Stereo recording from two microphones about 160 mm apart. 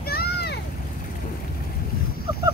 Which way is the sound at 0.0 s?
75° left (ahead or behind).